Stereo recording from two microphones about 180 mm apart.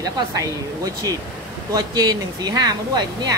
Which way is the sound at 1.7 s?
20° right (ahead or behind).